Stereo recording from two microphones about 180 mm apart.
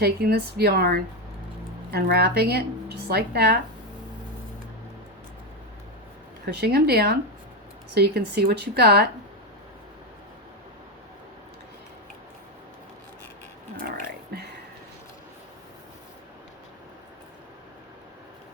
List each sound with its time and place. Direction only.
0.0 s speech: 60° right (ahead or behind)
6.4 s speech: 65° right (ahead or behind)
13.8 s a sound: 60° right (ahead or behind)